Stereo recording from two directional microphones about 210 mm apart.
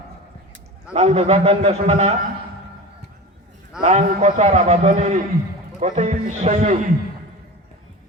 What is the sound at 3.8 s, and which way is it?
A man's voice, 35° right (ahead or behind).